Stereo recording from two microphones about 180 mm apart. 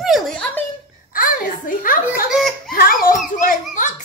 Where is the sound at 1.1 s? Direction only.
50° left (ahead or behind).